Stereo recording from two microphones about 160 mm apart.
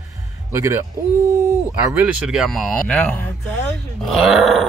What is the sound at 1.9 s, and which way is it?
Speech, 5° right (ahead or behind).